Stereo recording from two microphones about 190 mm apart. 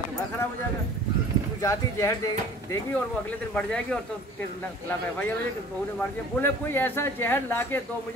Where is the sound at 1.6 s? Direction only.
15° left (ahead or behind).